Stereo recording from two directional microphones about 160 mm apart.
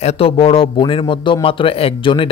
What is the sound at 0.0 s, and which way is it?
A man's voice, 40° left (ahead or behind).